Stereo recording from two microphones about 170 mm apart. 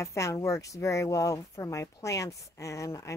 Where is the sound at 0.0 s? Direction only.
15° left (ahead or behind).